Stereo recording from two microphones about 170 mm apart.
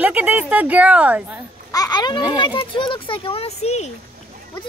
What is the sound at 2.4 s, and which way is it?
Speech, 30° left (ahead or behind).